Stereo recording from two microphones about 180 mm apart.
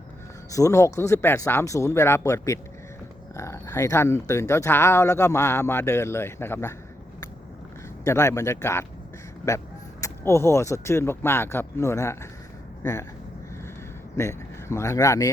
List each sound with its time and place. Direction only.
0.5 s speech: 15° left (ahead or behind)
8.0 s speech: 15° left (ahead or behind)
14.2 s speech: 15° left (ahead or behind)